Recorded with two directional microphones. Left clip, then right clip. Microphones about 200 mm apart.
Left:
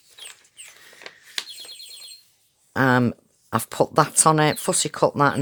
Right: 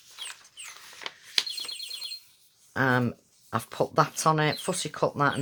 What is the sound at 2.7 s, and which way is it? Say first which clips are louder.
Speech: left 6 dB; 40° left (ahead or behind).